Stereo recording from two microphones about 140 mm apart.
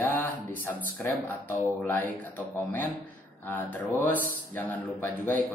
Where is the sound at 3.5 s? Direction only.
15° left (ahead or behind).